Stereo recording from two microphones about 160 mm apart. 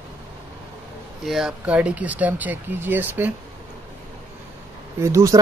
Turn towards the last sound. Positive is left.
turn(degrees=-20)  # may be behind; listen again after turning